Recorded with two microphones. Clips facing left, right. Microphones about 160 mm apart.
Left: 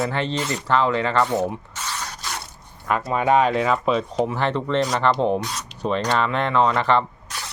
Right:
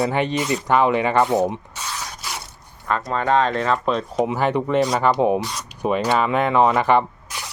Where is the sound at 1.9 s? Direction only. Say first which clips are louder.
Even; 5° right (ahead or behind).